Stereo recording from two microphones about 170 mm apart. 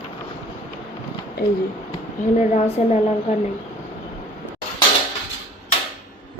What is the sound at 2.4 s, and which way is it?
Speech, 45° left (ahead or behind).